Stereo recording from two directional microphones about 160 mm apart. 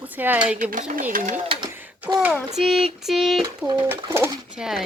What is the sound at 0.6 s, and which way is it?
Speech, 50° right (ahead or behind).